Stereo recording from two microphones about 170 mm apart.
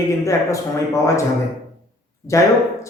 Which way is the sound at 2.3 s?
15° left (ahead or behind).